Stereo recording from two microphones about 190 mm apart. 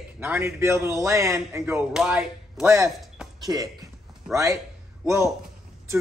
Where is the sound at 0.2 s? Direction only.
15° right (ahead or behind).